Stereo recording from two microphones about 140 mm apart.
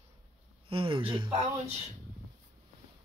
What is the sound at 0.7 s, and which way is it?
Speech, 40° right (ahead or behind).